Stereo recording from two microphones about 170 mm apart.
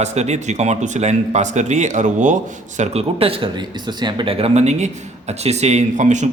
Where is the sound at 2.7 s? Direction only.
35° right (ahead or behind).